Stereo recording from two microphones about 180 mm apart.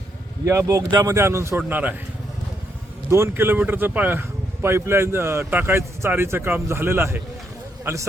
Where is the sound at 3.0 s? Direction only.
15° right (ahead or behind).